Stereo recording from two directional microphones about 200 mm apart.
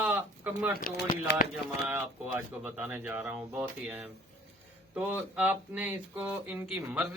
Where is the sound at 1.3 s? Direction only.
60° left (ahead or behind).